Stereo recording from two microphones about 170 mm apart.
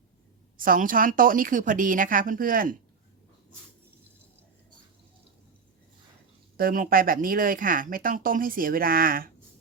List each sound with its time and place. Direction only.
0.5 s a woman's voice: 55° right (ahead or behind)
6.6 s speech: 55° right (ahead or behind)